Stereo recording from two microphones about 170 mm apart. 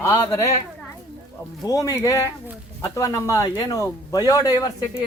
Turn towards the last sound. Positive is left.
turn(degrees=20)  # may be behind; listen again after turning